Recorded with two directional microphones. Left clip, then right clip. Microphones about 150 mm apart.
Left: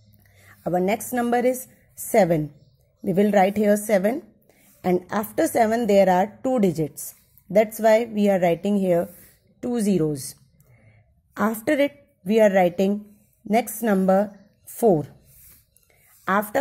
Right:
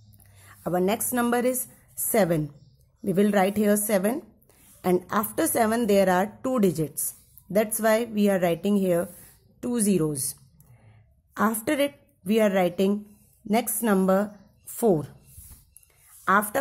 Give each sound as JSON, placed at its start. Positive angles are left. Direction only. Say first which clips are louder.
{"t": 0.4, "sound": "a woman's voice", "louder": "left 2 dB", "side_deg": 15}
{"t": 11.3, "sound": "a woman's voice", "louder": "left 3 dB", "side_deg": 15}
{"t": 16.3, "sound": "speech", "louder": "right 1 dB", "side_deg": 15}